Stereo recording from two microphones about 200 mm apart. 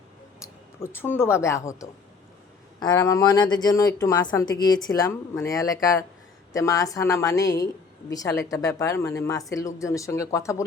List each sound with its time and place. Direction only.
0.8 s speech: 10° left (ahead or behind)